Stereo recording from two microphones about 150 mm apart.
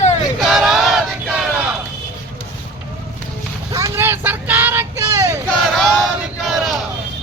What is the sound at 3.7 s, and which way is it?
Vehicle, 15° right (ahead or behind).